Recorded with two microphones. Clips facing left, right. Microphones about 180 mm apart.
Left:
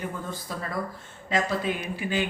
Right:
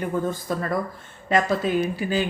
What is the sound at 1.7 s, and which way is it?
Speech, 45° right (ahead or behind).